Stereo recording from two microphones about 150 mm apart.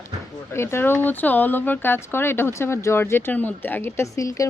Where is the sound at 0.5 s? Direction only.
15° left (ahead or behind).